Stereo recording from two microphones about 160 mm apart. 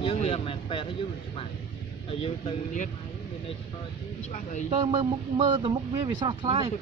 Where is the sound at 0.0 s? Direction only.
40° left (ahead or behind).